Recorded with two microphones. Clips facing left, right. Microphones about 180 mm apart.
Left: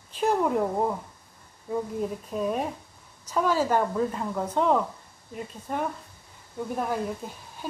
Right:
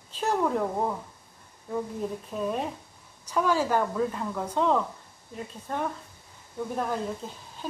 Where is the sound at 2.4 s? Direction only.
10° left (ahead or behind).